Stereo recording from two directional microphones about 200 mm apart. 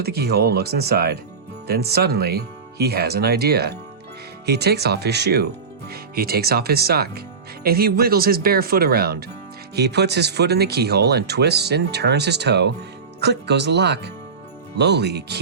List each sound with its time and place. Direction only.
0.0 s speech: 50° right (ahead or behind)